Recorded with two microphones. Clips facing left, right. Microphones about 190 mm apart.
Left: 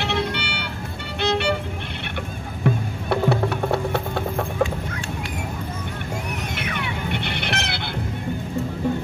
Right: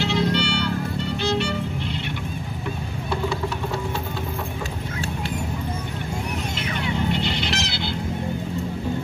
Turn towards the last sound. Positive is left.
turn(degrees=60)  # may be behind; listen again after turning